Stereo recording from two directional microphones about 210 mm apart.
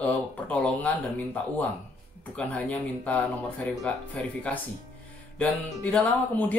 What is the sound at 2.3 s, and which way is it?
Speech, 5° left (ahead or behind).